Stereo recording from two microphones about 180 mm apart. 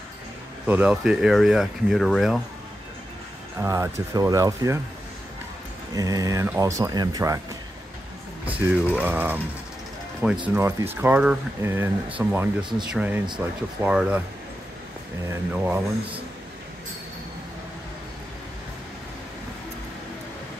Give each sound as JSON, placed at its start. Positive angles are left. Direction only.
{"t": 0.7, "sound": "speech", "side_deg": -5}
{"t": 3.6, "sound": "speech", "side_deg": -15}
{"t": 5.9, "sound": "speech", "side_deg": -20}
{"t": 8.5, "sound": "speech", "side_deg": -10}
{"t": 10.5, "sound": "speech", "side_deg": -15}
{"t": 15.5, "sound": "speech", "side_deg": -10}